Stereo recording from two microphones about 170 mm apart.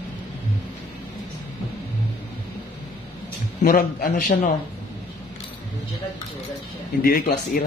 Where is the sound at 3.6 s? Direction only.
60° left (ahead or behind).